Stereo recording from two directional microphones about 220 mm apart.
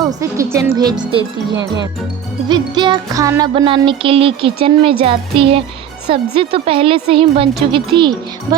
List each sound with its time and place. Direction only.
0.2 s speech: 15° right (ahead or behind)
2.5 s music: 20° right (ahead or behind)